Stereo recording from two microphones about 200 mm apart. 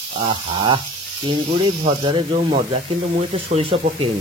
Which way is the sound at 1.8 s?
25° right (ahead or behind).